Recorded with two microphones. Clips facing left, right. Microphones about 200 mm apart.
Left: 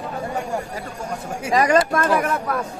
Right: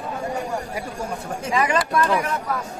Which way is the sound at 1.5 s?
40° left (ahead or behind).